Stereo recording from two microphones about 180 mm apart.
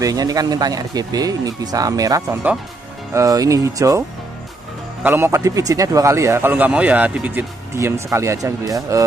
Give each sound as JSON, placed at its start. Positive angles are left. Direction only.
{"t": 0.0, "sound": "speech", "side_deg": -20}
{"t": 5.0, "sound": "speech", "side_deg": -15}